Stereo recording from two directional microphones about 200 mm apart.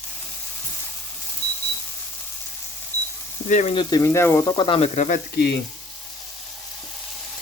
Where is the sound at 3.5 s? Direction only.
35° left (ahead or behind).